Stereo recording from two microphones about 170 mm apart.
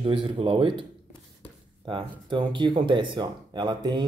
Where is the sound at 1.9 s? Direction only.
30° right (ahead or behind).